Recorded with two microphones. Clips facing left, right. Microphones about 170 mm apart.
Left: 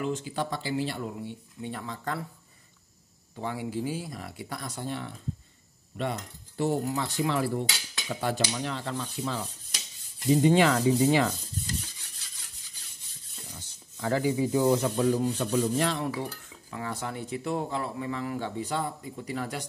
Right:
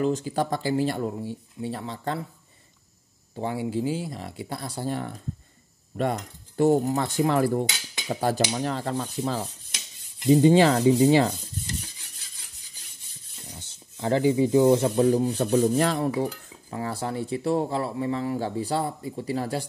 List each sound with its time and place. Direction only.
0.0 s speech: 40° right (ahead or behind)
3.3 s speech: 30° right (ahead or behind)
10.4 s speech: 30° right (ahead or behind)
13.5 s speech: 25° right (ahead or behind)
15.3 s speech: 45° right (ahead or behind)